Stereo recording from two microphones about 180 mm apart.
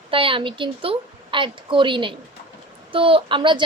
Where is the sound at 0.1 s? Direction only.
30° right (ahead or behind).